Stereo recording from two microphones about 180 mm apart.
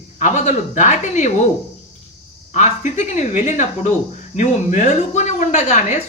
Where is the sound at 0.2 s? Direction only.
40° left (ahead or behind).